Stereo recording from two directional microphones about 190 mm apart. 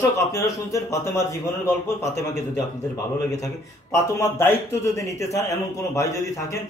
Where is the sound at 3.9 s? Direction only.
15° left (ahead or behind).